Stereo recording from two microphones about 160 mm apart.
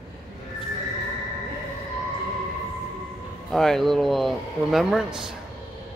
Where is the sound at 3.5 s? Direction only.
Centre (ahead or behind).